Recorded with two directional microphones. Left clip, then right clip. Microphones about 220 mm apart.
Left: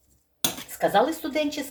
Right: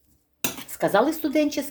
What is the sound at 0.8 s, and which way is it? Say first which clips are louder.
Speech: right 1 dB; 50° right (ahead or behind).